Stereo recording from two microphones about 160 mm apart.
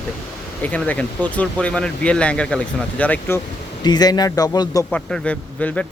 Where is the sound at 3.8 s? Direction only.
25° left (ahead or behind).